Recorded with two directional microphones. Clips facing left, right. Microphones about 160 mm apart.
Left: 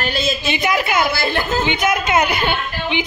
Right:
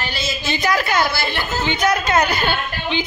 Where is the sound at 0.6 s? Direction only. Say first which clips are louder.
Right 1 dB; 25° left (ahead or behind).